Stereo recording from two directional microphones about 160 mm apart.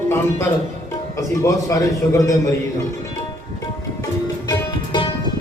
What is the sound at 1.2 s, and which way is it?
A man's voice, 20° left (ahead or behind).